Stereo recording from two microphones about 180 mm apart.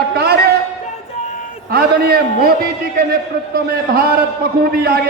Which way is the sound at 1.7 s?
60° right (ahead or behind).